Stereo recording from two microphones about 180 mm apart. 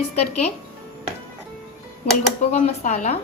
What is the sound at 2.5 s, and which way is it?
Speech, 40° left (ahead or behind).